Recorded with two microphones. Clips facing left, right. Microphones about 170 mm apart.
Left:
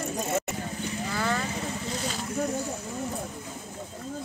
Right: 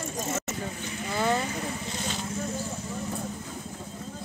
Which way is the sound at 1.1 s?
20° right (ahead or behind).